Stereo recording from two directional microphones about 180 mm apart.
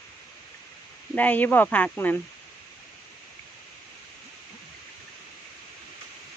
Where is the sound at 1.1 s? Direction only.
10° left (ahead or behind).